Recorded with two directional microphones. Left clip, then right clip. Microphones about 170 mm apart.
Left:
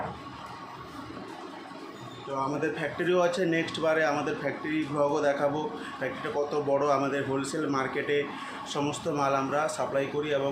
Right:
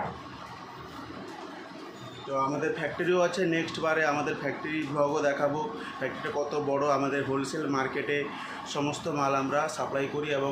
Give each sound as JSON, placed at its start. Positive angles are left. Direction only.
{"t": 2.3, "sound": "speech", "side_deg": 15}